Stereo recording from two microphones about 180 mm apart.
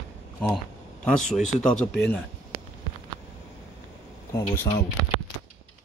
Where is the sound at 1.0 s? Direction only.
5° left (ahead or behind).